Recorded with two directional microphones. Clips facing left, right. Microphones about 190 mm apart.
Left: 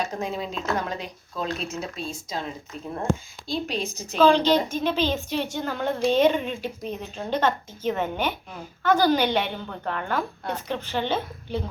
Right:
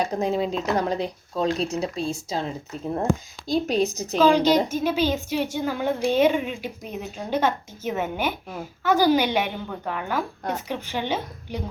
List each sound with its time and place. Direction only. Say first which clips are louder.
0.0 s speech: right 5 dB; 35° right (ahead or behind)
3.4 s a woman's voice: right 6 dB; 45° right (ahead or behind)
4.2 s speech: right 1 dB; 10° right (ahead or behind)